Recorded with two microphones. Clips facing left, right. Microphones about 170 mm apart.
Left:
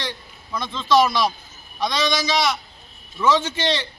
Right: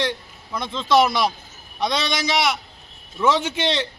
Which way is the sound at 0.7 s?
15° right (ahead or behind).